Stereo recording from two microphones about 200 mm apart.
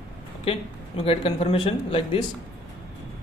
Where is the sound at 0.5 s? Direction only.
30° left (ahead or behind).